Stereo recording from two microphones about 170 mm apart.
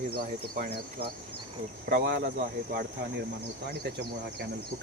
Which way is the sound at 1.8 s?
80° right.